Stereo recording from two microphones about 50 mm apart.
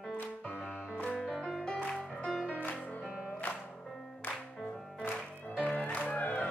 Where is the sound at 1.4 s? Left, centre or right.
Centre; by 4.4 s left.